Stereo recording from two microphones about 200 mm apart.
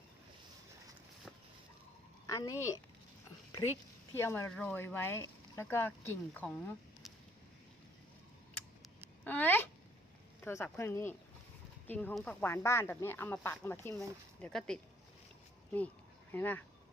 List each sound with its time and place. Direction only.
2.2 s a woman's voice: 15° left (ahead or behind)
4.1 s speech: 10° left (ahead or behind)
9.2 s a sound: 10° left (ahead or behind)
10.4 s speech: 10° left (ahead or behind)
16.3 s speech: 10° left (ahead or behind)